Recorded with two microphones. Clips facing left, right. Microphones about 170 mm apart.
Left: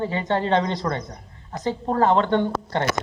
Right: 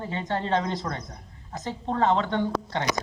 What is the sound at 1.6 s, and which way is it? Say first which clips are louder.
Speech: left 5 dB; 40° left (ahead or behind).